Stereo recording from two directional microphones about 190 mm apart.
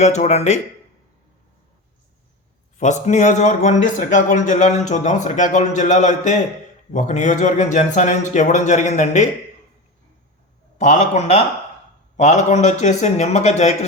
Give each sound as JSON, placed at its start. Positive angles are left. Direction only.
{"t": 0.0, "sound": "speech", "side_deg": 35}
{"t": 2.7, "sound": "speech", "side_deg": 40}
{"t": 10.8, "sound": "speech", "side_deg": 40}